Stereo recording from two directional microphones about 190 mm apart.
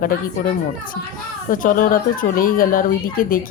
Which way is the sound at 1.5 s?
45° left (ahead or behind).